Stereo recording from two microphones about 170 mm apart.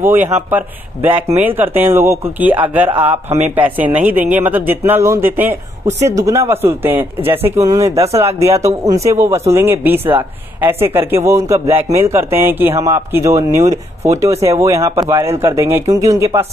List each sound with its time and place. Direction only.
0.0 s a woman's voice: 10° right (ahead or behind)